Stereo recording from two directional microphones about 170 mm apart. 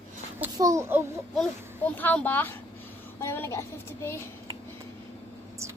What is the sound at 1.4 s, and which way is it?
A woman's voice, 10° left (ahead or behind).